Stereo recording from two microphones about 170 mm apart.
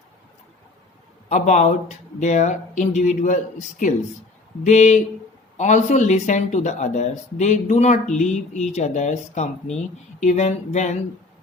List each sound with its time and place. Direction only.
1.3 s speech: 45° left (ahead or behind)